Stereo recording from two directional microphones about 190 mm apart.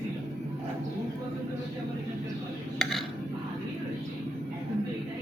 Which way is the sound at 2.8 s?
Centre (ahead or behind).